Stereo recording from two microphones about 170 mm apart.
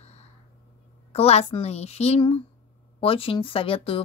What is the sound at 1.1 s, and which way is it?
Speech, 35° left (ahead or behind).